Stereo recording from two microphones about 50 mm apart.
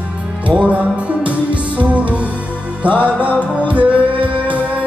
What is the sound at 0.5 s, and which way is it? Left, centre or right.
Music, right.